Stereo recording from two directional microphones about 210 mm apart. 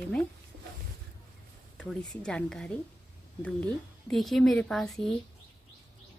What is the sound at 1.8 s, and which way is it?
Speech, 5° left (ahead or behind).